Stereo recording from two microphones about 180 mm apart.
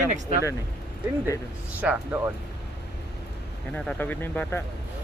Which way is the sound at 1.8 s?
10° right (ahead or behind).